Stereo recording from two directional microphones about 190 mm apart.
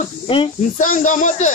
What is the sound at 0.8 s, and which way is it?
Speech, 40° left (ahead or behind).